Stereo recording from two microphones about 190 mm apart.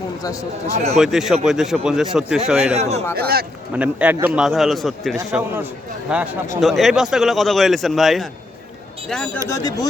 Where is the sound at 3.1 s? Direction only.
55° right (ahead or behind).